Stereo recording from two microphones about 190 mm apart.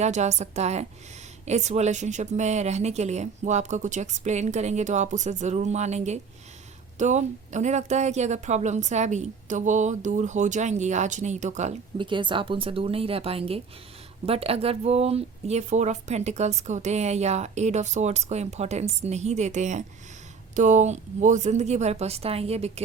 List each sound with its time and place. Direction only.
0.0 s speech: 35° right (ahead or behind)